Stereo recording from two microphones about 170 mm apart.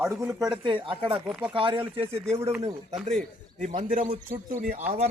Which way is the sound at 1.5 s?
30° right (ahead or behind).